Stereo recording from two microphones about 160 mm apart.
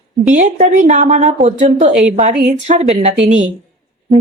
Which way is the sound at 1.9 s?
5° right (ahead or behind).